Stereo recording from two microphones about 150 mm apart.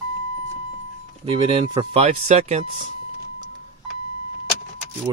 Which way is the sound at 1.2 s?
35° right (ahead or behind).